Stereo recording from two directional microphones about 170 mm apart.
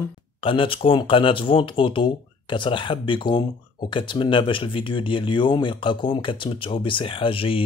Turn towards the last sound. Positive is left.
turn(degrees=30)  # may be behind; listen again after turning